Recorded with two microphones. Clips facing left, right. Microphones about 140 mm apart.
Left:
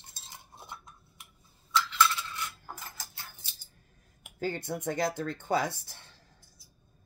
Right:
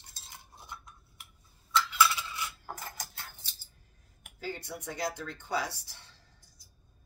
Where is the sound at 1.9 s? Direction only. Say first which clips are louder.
Even; 10° right (ahead or behind).